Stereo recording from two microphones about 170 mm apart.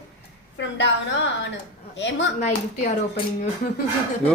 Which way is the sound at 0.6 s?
90° left.